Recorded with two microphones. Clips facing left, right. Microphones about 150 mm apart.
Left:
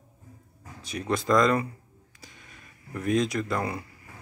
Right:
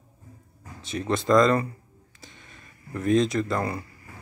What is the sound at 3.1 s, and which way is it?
Speech, 25° right (ahead or behind).